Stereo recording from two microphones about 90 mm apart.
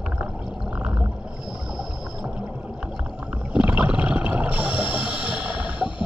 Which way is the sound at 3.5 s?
15° right (ahead or behind).